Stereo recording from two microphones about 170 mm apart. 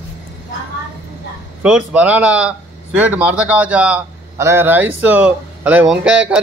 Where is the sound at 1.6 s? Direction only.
5° right (ahead or behind).